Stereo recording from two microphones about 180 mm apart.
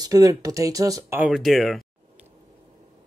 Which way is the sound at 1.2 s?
Centre (ahead or behind).